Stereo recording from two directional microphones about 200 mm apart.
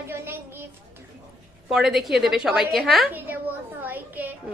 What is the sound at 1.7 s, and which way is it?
A woman's voice, centre (ahead or behind).